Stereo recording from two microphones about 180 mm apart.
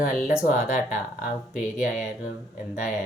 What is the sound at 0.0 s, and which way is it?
Speech, 50° left (ahead or behind).